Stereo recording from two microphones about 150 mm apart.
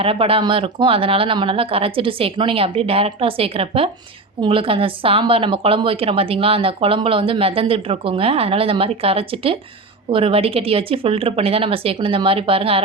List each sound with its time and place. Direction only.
0.0 s a woman's voice: 40° right (ahead or behind)